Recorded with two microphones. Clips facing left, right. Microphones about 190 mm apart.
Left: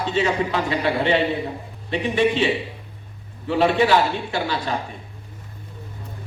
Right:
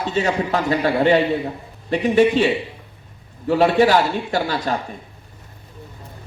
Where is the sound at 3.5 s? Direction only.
40° right (ahead or behind).